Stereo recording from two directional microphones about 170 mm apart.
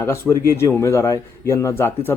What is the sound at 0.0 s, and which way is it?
Speech, 15° left (ahead or behind).